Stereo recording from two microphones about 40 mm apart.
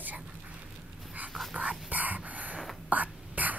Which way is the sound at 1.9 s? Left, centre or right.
Right.